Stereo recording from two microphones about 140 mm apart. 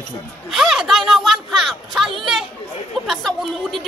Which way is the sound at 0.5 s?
Centre (ahead or behind).